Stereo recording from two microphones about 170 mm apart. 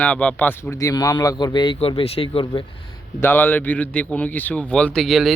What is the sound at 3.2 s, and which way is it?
Speech, 10° left (ahead or behind).